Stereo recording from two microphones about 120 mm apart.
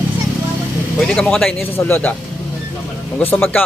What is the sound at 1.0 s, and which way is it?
Speech, 5° left (ahead or behind).